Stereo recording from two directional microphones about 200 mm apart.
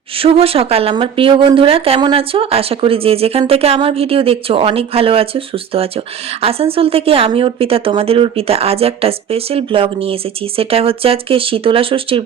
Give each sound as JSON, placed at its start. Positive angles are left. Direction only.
{"t": 0.2, "sound": "speech", "side_deg": -30}